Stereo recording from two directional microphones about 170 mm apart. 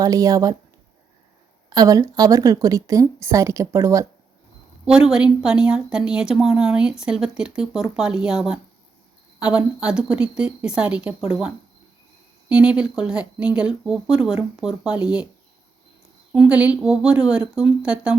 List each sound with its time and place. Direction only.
0.0 s a woman's voice: 20° right (ahead or behind)
1.7 s a woman's voice: 20° right (ahead or behind)
4.9 s a woman's voice: 5° right (ahead or behind)
12.5 s a woman's voice: 5° right (ahead or behind)
16.3 s a woman's voice: 5° right (ahead or behind)